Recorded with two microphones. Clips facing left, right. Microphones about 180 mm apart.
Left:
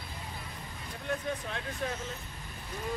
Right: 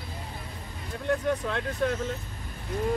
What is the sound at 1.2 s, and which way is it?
Speech, 70° right (ahead or behind).